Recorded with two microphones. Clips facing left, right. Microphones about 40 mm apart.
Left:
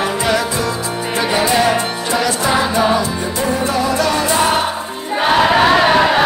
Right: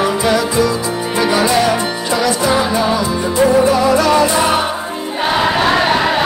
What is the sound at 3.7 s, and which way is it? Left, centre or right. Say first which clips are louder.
Music: right 5 dB; right.